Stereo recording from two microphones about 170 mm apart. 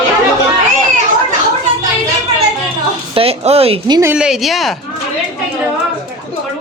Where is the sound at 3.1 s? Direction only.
35° right (ahead or behind).